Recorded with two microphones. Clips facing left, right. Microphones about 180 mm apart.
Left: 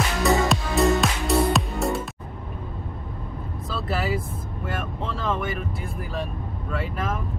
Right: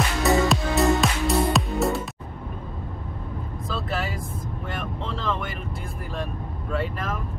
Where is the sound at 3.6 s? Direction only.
Centre (ahead or behind).